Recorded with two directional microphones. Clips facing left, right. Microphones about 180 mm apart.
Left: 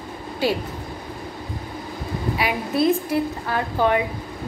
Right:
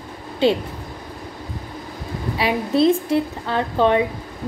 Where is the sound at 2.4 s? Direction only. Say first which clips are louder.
Right 5 dB; 30° right (ahead or behind).